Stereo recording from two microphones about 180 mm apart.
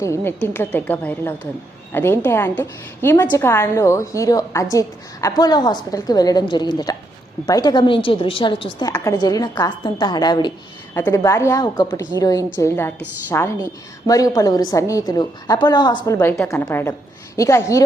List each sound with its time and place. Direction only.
0.0 s a woman's voice: 15° left (ahead or behind)